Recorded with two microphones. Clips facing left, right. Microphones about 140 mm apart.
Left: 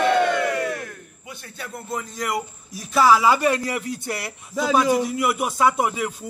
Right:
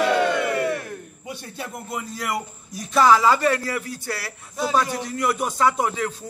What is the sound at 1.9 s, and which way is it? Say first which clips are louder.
A man's voice: left 2 dB; 5° right (ahead or behind).